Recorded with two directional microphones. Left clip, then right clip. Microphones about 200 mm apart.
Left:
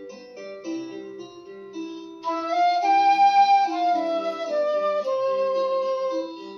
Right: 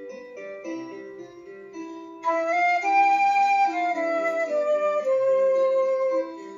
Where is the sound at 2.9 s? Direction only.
40° left (ahead or behind).